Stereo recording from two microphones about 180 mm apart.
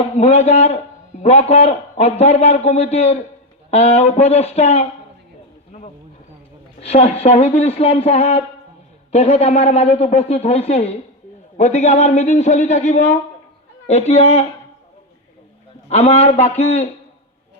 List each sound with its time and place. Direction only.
0.2 s a man's voice: 35° left (ahead or behind)
6.7 s a man's voice: 35° left (ahead or behind)
15.9 s a man's voice: 35° left (ahead or behind)